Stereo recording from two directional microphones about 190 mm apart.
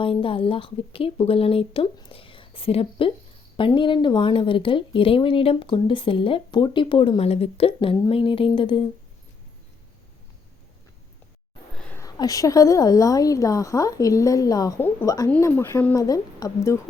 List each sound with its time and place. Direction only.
0.0 s speech: 30° left (ahead or behind)
11.8 s a sound: 5° left (ahead or behind)
12.0 s a woman's voice: 20° left (ahead or behind)